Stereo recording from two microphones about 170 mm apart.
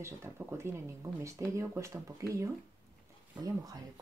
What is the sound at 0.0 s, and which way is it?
Speech, 15° right (ahead or behind).